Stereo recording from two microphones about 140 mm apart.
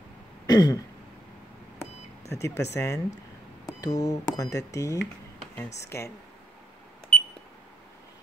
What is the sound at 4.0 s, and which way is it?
Speech, 25° left (ahead or behind).